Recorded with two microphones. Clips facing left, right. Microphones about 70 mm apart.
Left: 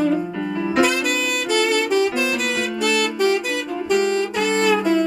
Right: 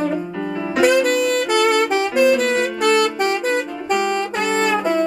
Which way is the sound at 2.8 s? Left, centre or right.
Right.